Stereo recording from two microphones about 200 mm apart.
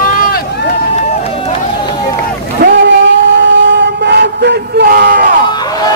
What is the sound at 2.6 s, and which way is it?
Vehicle, 55° right (ahead or behind).